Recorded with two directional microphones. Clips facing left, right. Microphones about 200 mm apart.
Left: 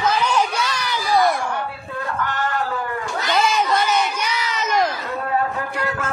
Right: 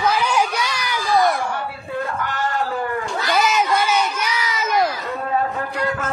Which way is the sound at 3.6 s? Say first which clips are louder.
Even; 10° right (ahead or behind).